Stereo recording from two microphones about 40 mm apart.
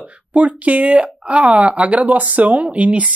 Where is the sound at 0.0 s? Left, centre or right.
Right.